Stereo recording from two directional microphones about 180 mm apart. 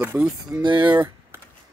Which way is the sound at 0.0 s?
10° right (ahead or behind).